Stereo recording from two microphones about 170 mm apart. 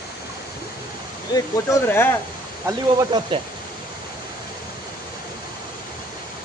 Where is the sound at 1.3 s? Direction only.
15° left (ahead or behind).